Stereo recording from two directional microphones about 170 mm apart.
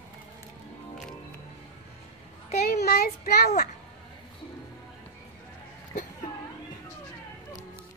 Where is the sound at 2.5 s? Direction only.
65° left (ahead or behind).